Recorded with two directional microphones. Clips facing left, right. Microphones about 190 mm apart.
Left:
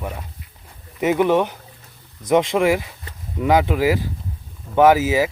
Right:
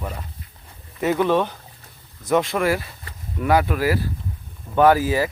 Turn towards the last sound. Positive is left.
turn(degrees=10)  # may be behind; listen again after turning